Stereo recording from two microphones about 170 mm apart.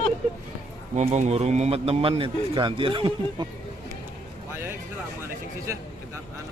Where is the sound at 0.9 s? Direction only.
45° right (ahead or behind).